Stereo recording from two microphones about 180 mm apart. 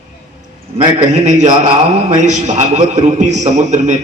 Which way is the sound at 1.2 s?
40° right (ahead or behind).